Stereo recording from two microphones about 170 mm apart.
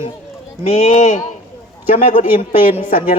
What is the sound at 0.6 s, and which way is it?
Speech, 40° left (ahead or behind).